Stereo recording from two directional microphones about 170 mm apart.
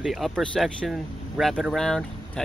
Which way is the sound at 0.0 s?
Centre (ahead or behind).